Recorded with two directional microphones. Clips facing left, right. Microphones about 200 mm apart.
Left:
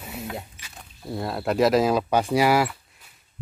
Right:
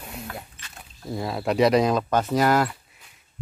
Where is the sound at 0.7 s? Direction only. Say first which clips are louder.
Even; centre (ahead or behind).